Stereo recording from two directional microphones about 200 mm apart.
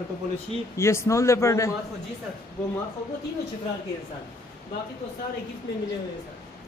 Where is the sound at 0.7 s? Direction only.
15° left (ahead or behind).